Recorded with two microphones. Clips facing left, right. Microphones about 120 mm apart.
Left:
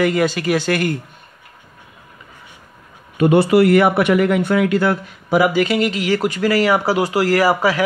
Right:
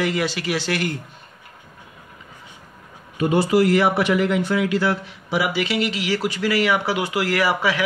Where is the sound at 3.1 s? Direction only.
60° left (ahead or behind).